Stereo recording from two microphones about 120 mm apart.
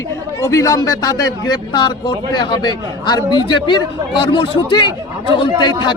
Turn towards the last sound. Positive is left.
turn(degrees=40)  # may be behind; listen again after turning